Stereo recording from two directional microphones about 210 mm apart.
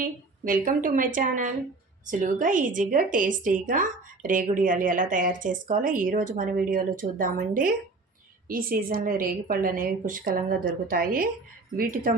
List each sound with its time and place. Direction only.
0.0 s a woman's voice: 40° right (ahead or behind)